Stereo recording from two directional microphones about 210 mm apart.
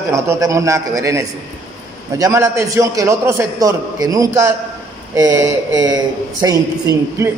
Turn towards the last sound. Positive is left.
turn(degrees=-15)  # may be behind; listen again after turning